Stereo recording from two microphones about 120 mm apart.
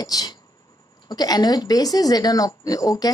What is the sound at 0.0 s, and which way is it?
A woman's voice, 30° left (ahead or behind).